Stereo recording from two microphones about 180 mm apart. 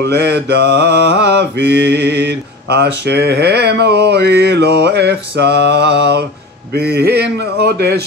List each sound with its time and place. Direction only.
0.0 s mantra: 65° right (ahead or behind)
6.7 s speech: 65° right (ahead or behind)